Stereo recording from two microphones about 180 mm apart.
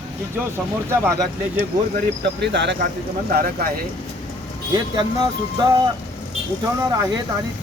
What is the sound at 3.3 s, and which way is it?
Speech, 55° right (ahead or behind).